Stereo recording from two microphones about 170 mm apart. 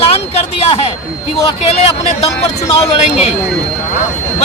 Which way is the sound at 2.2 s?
35° left (ahead or behind).